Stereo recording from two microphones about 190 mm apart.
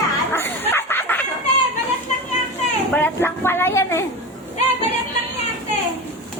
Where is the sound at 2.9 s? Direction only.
10° left (ahead or behind).